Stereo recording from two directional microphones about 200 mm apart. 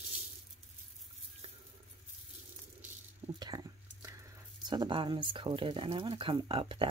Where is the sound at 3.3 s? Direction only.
20° right (ahead or behind).